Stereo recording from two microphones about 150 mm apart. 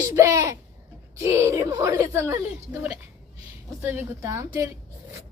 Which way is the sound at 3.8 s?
15° right (ahead or behind).